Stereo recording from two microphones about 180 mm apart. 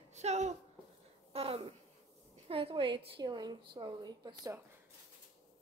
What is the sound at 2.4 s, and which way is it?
A woman's voice, 30° right (ahead or behind).